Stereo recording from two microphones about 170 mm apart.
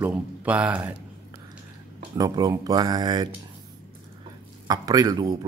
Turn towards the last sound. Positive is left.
turn(degrees=-20)  # may be behind; listen again after turning